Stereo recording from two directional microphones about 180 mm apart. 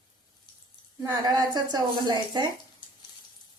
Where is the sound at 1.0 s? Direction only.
20° right (ahead or behind).